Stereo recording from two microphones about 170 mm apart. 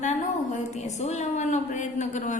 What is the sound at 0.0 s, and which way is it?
A woman's voice, 45° left (ahead or behind).